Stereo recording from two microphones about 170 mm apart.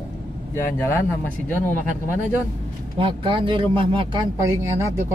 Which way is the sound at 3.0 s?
30° right (ahead or behind).